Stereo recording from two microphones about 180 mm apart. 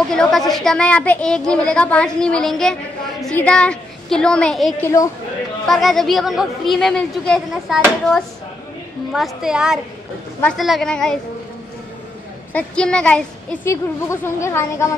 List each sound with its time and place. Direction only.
0.1 s a woman's voice: centre (ahead or behind)
4.8 s speech: 20° left (ahead or behind)
5.7 s a woman's voice: centre (ahead or behind)
9.1 s a woman's voice: centre (ahead or behind)
12.5 s speech: 5° left (ahead or behind)